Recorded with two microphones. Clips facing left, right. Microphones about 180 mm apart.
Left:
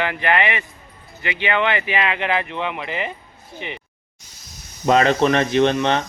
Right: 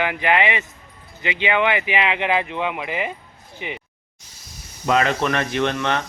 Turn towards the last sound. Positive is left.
turn(degrees=20)  # may be behind; listen again after turning